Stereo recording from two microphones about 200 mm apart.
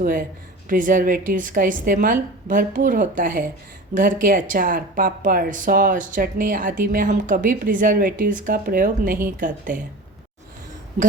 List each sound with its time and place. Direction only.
0.0 s speech: 45° right (ahead or behind)